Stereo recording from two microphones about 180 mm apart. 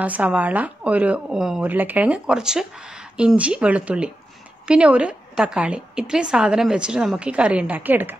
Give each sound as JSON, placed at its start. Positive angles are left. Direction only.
{"t": 0.0, "sound": "a woman's voice", "side_deg": -10}